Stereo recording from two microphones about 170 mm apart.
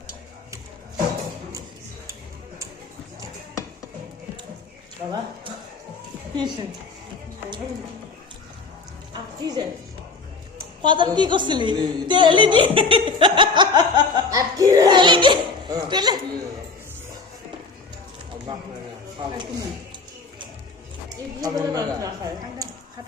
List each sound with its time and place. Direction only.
6.3 s a woman's voice: 25° right (ahead or behind)
9.1 s music: 25° right (ahead or behind)
10.8 s a woman's voice: 30° right (ahead or behind)
21.4 s a man's voice: 20° right (ahead or behind)